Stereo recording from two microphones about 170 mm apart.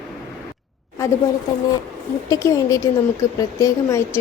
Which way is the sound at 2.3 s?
20° left (ahead or behind).